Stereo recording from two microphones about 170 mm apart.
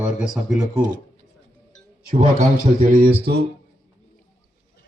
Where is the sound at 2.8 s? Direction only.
65° right (ahead or behind).